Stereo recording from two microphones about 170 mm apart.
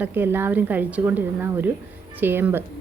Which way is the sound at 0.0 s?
10° right (ahead or behind).